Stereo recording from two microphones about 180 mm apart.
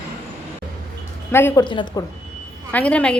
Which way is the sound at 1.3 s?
15° left (ahead or behind).